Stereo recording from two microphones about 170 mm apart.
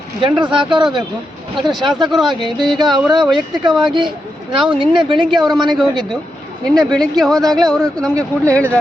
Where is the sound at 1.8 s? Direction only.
25° right (ahead or behind).